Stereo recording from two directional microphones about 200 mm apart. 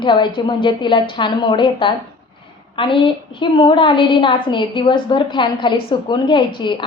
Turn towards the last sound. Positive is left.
turn(degrees=25)  # may be behind; listen again after turning